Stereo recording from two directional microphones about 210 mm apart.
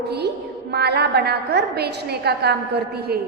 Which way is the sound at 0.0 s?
50° right (ahead or behind).